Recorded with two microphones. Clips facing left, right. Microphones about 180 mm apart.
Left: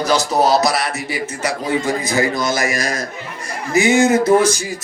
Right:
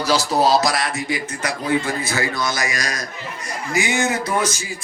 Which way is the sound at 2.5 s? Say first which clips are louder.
Left 6 dB; 50° left (ahead or behind).